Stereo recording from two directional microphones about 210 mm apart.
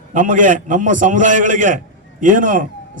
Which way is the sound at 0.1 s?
35° right (ahead or behind).